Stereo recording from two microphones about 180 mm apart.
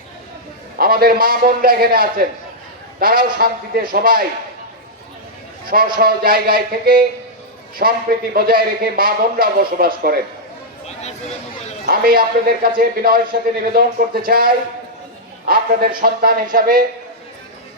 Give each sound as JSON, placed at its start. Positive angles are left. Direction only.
{"t": 0.8, "sound": "speech", "side_deg": -55}
{"t": 5.6, "sound": "speech", "side_deg": -55}
{"t": 11.9, "sound": "speech", "side_deg": -55}